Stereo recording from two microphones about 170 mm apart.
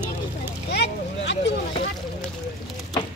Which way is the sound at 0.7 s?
90° left.